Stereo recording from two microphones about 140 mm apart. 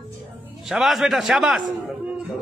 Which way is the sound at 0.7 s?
Centre (ahead or behind).